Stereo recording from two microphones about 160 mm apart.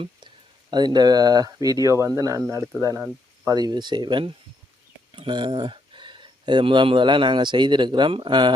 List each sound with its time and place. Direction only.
0.7 s speech: 25° right (ahead or behind)